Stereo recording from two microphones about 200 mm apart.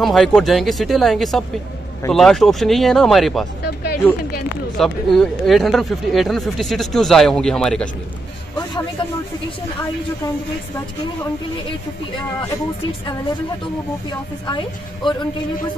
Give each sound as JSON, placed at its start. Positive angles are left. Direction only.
{"t": 0.0, "sound": "speech", "side_deg": 0}
{"t": 3.6, "sound": "speech", "side_deg": 55}
{"t": 4.7, "sound": "speech", "side_deg": 0}
{"t": 8.5, "sound": "a man's voice", "side_deg": 20}
{"t": 12.1, "sound": "a woman's voice", "side_deg": 20}
{"t": 14.4, "sound": "a woman's voice", "side_deg": 25}